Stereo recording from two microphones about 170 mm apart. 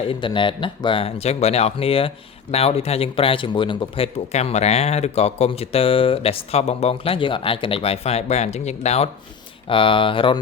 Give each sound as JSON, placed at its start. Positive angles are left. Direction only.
{"t": 0.1, "sound": "speech", "side_deg": 30}